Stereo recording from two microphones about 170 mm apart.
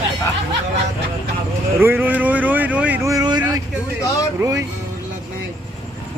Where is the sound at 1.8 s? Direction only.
10° right (ahead or behind).